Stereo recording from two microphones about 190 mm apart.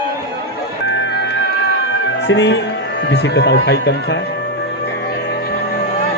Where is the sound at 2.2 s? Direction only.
65° left (ahead or behind).